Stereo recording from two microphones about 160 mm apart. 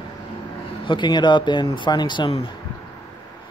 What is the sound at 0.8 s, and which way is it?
Speech, 30° left (ahead or behind).